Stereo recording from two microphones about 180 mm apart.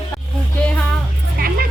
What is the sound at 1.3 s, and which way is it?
Vehicle, 55° right (ahead or behind).